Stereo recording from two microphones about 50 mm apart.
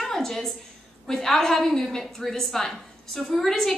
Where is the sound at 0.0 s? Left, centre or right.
Centre.